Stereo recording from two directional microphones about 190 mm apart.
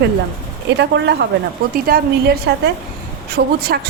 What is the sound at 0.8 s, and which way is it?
A woman's voice, 65° right (ahead or behind).